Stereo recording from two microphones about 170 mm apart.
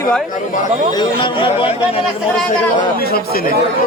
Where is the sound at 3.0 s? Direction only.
65° left (ahead or behind).